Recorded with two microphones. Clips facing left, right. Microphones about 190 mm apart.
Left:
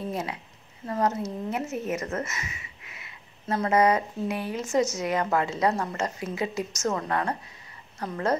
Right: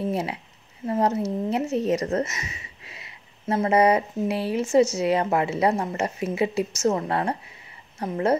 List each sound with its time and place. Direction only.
0.1 s a woman's voice: 30° right (ahead or behind)